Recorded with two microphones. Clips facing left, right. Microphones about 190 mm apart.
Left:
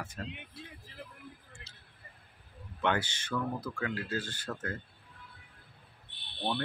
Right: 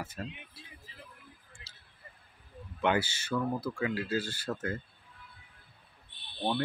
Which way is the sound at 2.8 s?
10° right (ahead or behind).